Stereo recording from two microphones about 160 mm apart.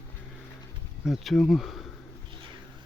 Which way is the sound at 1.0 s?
Centre (ahead or behind).